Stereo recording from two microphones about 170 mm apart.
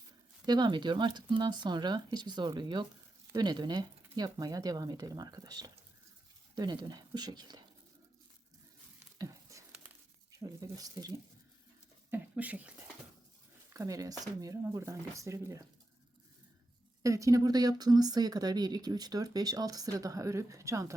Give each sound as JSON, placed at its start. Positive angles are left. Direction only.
{"t": 0.4, "sound": "speech", "side_deg": -25}
{"t": 9.1, "sound": "a sound", "side_deg": -20}
{"t": 10.4, "sound": "speech", "side_deg": -20}
{"t": 12.1, "sound": "speech", "side_deg": -10}
{"t": 13.7, "sound": "speech", "side_deg": -20}
{"t": 17.0, "sound": "speech", "side_deg": -20}